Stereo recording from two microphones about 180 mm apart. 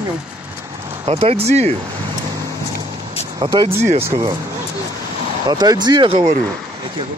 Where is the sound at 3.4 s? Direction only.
25° right (ahead or behind).